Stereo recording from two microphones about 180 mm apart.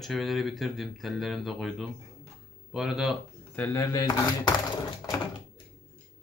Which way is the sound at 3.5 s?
15° left (ahead or behind).